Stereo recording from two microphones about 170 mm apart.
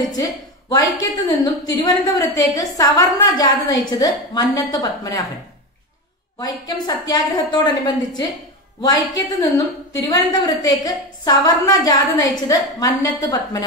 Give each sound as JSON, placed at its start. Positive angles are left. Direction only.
{"t": 0.1, "sound": "a woman's voice", "side_deg": 25}
{"t": 6.4, "sound": "a woman's voice", "side_deg": 25}